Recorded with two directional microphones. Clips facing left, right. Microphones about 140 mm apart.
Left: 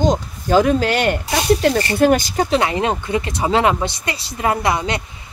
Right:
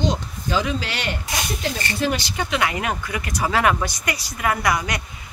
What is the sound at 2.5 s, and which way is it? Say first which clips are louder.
Speech: left 4 dB; 30° left (ahead or behind).